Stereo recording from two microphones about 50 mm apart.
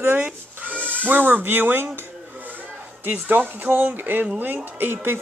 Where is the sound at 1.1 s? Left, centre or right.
Right.